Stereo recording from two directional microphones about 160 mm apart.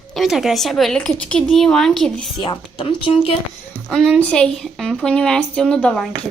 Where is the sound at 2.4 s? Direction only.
35° left (ahead or behind).